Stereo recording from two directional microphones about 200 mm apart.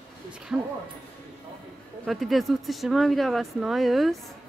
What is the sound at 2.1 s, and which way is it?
Speech, centre (ahead or behind).